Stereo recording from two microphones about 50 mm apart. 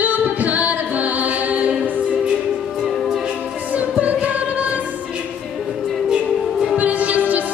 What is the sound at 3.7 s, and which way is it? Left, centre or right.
Music, right.